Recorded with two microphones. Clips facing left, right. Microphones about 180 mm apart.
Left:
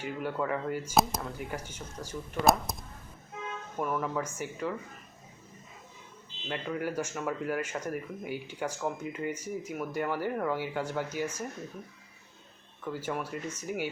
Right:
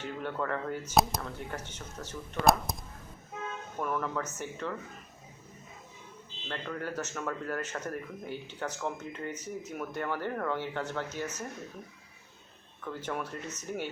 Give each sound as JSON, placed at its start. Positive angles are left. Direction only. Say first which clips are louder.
{"t": 0.0, "sound": "speech", "louder": "left 2 dB", "side_deg": 10}
{"t": 3.8, "sound": "speech", "louder": "left 2 dB", "side_deg": 5}
{"t": 6.5, "sound": "speech", "louder": "left 3 dB", "side_deg": 10}
{"t": 12.8, "sound": "speech", "louder": "left 2 dB", "side_deg": 10}